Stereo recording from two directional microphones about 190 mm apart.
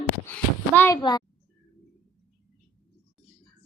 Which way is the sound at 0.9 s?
20° left (ahead or behind).